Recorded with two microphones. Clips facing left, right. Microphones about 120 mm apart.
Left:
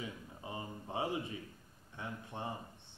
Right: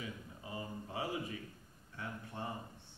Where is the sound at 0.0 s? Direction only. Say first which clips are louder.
Left 1 dB; 25° left (ahead or behind).